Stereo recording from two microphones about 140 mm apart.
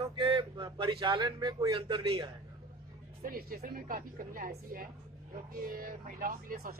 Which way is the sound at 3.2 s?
90° right.